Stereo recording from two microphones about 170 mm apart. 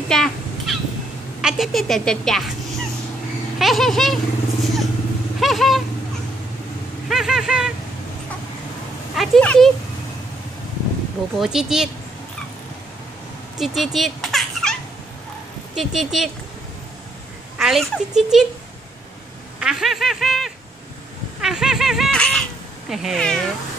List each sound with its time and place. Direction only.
0.1 s crow: 5° left (ahead or behind)
1.4 s a woman's voice: centre (ahead or behind)
3.5 s speech: centre (ahead or behind)
5.4 s a sound: centre (ahead or behind)
7.1 s a woman's voice: 5° right (ahead or behind)
9.1 s a woman's voice: centre (ahead or behind)
11.3 s a woman's voice: 5° right (ahead or behind)
13.6 s a sound: centre (ahead or behind)
15.7 s a woman's voice: centre (ahead or behind)
17.6 s a woman's voice: centre (ahead or behind)
19.6 s a woman's voice: 5° right (ahead or behind)